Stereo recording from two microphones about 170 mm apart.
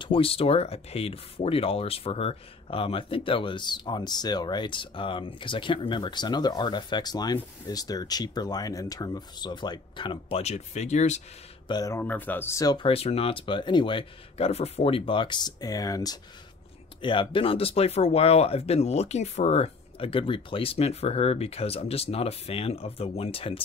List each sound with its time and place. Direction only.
0.0 s speech: 30° left (ahead or behind)
11.6 s speech: 20° left (ahead or behind)